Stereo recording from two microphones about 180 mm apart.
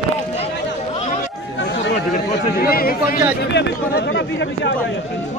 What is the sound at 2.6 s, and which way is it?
Speech, 55° left (ahead or behind).